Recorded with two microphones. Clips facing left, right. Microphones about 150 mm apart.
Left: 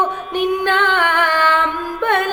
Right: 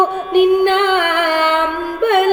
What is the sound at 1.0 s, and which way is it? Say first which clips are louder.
Music: right 2 dB; 55° right (ahead or behind).